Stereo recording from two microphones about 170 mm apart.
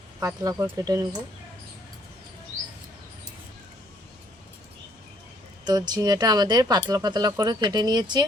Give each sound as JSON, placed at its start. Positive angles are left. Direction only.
{"t": 0.2, "sound": "speech", "side_deg": -20}
{"t": 5.6, "sound": "speech", "side_deg": -25}